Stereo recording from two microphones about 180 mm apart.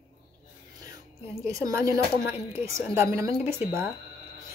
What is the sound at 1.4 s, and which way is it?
A woman's voice, 20° right (ahead or behind).